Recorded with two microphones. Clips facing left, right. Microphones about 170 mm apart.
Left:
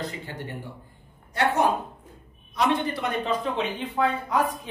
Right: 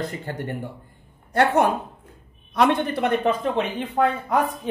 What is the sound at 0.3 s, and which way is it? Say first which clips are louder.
Speech: right 6 dB; 50° right (ahead or behind).